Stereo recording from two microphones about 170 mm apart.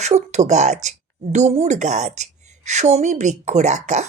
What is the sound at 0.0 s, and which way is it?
Speech, 40° right (ahead or behind).